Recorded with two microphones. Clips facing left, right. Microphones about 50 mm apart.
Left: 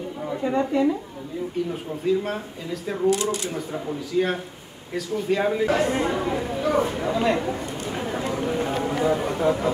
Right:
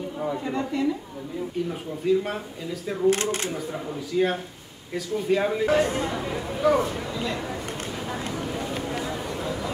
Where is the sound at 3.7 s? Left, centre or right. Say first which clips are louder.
Left 2 dB; centre.